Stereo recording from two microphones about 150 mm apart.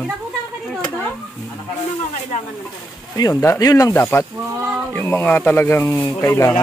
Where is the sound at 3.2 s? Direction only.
25° left (ahead or behind).